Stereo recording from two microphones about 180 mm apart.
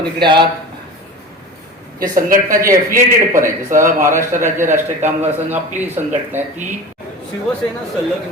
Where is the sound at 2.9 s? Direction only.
50° right (ahead or behind).